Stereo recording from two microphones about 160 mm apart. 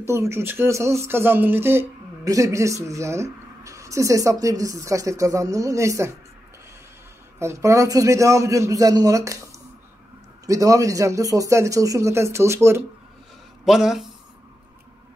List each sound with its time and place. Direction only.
0.0 s speech: 15° right (ahead or behind)
7.3 s speech: 20° right (ahead or behind)
13.7 s speech: 5° right (ahead or behind)